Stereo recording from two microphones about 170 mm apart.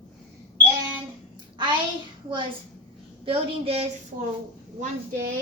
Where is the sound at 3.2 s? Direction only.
35° right (ahead or behind).